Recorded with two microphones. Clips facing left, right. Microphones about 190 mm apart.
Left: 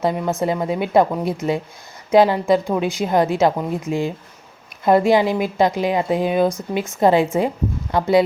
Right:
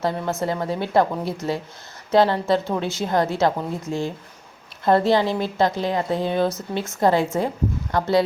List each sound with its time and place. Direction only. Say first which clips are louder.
0.0 s a woman's voice: left 4 dB; 15° left (ahead or behind)